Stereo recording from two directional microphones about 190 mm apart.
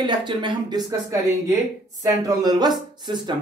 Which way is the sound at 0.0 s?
25° right (ahead or behind).